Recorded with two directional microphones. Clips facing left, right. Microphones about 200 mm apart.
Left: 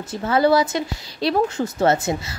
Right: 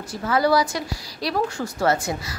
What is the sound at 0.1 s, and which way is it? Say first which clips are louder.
A woman's voice: left 3 dB; 25° left (ahead or behind).